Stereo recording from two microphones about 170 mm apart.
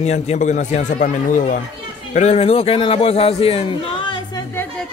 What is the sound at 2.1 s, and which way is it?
A man's voice, 40° left (ahead or behind).